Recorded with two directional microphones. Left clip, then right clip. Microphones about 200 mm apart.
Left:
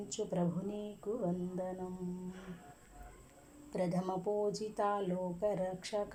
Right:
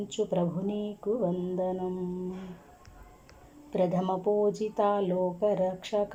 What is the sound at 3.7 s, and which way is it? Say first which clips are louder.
Speech: right 9 dB; 15° right (ahead or behind).